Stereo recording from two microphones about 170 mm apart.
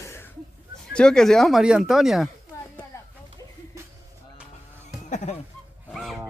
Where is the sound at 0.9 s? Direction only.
5° left (ahead or behind).